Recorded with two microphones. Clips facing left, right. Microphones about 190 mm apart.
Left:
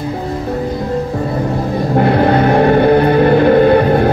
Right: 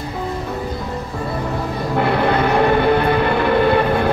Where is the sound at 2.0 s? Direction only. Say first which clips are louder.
Left 5 dB; 45° left (ahead or behind).